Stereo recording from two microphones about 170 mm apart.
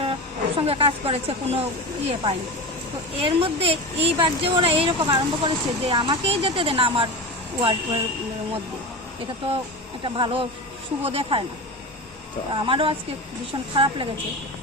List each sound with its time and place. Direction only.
0.0 s speech: 30° right (ahead or behind)
3.2 s speech: 35° right (ahead or behind)
10.0 s speech: 30° right (ahead or behind)
12.5 s speech: 30° right (ahead or behind)